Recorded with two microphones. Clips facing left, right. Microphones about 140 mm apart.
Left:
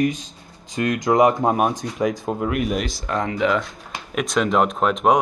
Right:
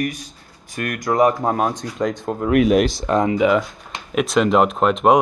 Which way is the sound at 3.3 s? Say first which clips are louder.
Right 4 dB; 5° right (ahead or behind).